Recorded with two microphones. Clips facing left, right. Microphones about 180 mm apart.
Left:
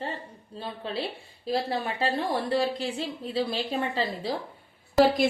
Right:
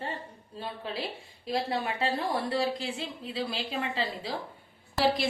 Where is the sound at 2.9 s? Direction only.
40° left (ahead or behind).